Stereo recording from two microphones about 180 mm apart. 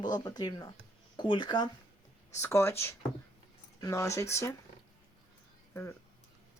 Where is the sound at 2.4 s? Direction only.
15° left (ahead or behind).